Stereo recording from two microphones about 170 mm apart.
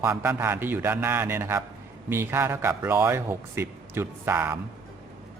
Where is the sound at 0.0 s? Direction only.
10° right (ahead or behind).